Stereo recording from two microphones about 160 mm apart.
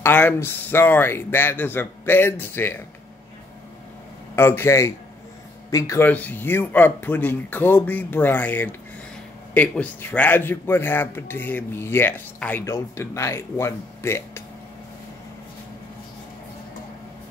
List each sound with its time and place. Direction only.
0.0 s speech: 10° left (ahead or behind)
4.4 s speech: 15° left (ahead or behind)